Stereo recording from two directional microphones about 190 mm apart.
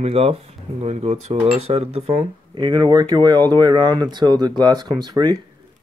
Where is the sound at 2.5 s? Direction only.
20° right (ahead or behind).